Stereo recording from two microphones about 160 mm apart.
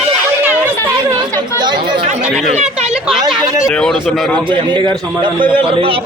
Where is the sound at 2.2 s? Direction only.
5° right (ahead or behind).